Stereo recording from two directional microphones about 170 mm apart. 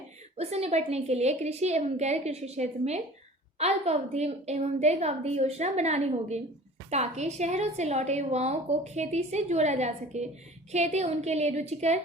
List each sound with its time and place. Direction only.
0.3 s a woman's voice: 40° right (ahead or behind)